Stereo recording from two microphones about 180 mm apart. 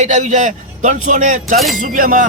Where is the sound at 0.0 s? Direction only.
45° right (ahead or behind).